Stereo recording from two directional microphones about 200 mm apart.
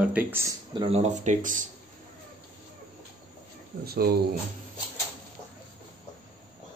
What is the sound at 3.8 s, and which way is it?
Speech, 50° right (ahead or behind).